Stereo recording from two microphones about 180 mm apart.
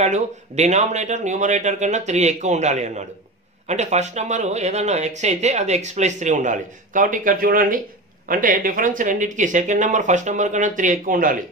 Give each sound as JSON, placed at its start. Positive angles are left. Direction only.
{"t": 0.0, "sound": "speech", "side_deg": -40}